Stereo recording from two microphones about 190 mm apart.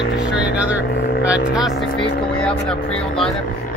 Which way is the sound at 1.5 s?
Centre (ahead or behind).